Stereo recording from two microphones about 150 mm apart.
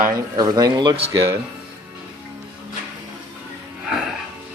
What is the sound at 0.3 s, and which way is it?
Speech, 25° right (ahead or behind).